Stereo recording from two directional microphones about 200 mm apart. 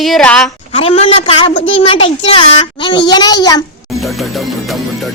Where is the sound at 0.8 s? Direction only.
30° left (ahead or behind).